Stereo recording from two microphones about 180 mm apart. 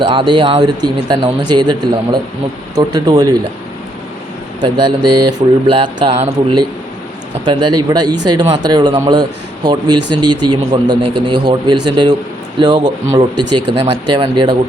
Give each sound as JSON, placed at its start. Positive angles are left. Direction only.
{"t": 0.1, "sound": "speech", "side_deg": -25}
{"t": 4.6, "sound": "speech", "side_deg": -25}